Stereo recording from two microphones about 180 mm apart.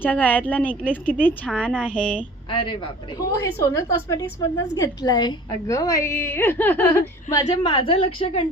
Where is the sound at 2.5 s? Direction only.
30° left (ahead or behind).